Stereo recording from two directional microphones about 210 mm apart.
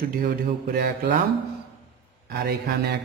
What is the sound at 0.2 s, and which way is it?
A man's voice, 45° right (ahead or behind).